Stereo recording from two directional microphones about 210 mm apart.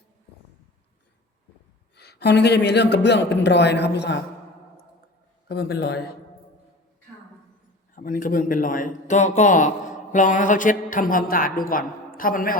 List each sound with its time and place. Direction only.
2.0 s a man's voice: 50° left (ahead or behind)
5.5 s a man's voice: 50° left (ahead or behind)
7.9 s a man's voice: 40° left (ahead or behind)